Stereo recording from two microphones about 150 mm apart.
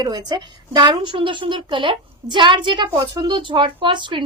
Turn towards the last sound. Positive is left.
turn(degrees=-35)  # may be behind; listen again after turning